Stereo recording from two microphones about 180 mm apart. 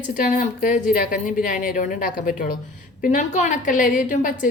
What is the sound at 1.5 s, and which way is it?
A woman's voice, 45° left (ahead or behind).